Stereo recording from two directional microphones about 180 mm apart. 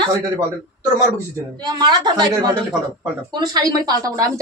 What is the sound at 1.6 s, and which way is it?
Speech, 25° right (ahead or behind).